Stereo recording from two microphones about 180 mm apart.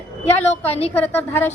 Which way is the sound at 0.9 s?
10° left (ahead or behind).